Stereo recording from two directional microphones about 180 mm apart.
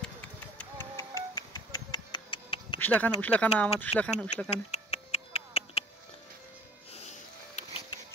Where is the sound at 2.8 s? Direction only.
10° left (ahead or behind).